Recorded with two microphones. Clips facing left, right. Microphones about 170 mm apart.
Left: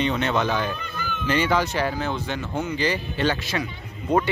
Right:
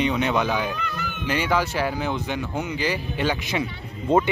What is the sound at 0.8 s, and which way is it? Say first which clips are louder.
Cat: right 2 dB; 80° right.